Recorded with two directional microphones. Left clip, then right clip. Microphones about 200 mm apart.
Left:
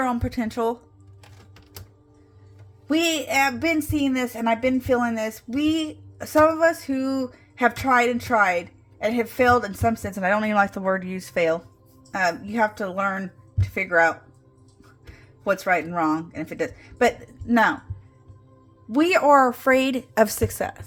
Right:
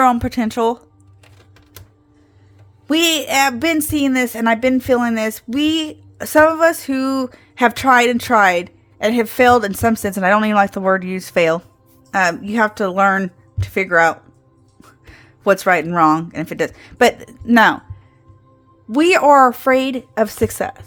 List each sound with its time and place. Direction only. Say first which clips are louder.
0.0 s speech: right 11 dB; 35° right (ahead or behind)
2.8 s speech: right 7 dB; 35° right (ahead or behind)
18.9 s a woman's voice: right 6 dB; 30° right (ahead or behind); by 20.4 s 10° right (ahead or behind)
20.4 s a woman's voice: right 6 dB; 20° right (ahead or behind)